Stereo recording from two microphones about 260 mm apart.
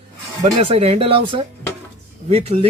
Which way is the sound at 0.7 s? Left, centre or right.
Right.